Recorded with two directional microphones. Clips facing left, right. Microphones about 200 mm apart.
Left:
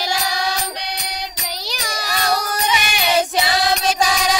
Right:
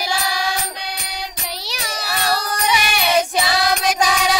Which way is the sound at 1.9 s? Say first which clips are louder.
Even; 10° right (ahead or behind).